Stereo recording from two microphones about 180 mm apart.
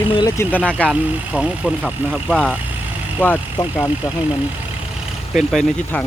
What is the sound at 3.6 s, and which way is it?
Speech, 20° left (ahead or behind).